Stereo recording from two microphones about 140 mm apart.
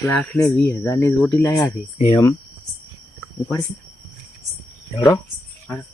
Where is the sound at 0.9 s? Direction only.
15° left (ahead or behind).